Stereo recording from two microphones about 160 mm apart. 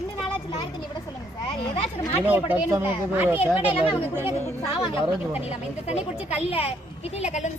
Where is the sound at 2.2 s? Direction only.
10° right (ahead or behind).